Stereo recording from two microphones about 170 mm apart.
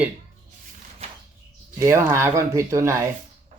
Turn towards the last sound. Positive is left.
turn(degrees=-15)  # may be behind; listen again after turning